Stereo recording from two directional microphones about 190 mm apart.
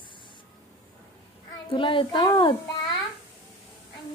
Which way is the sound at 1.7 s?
25° left (ahead or behind).